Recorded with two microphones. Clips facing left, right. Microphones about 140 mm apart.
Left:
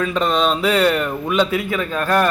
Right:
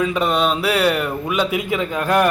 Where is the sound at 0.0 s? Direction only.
10° right (ahead or behind).